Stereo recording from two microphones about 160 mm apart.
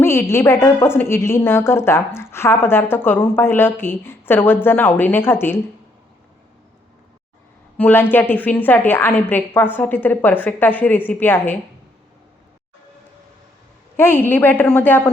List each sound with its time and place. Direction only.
0.0 s a woman's voice: 15° left (ahead or behind)
7.8 s a woman's voice: 15° left (ahead or behind)
13.9 s a woman's voice: 15° left (ahead or behind)